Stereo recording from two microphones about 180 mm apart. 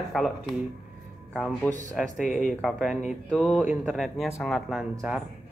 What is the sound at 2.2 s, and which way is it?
Speech, 45° left (ahead or behind).